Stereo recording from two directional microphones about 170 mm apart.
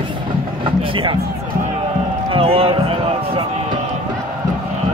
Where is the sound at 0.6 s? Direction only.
30° right (ahead or behind).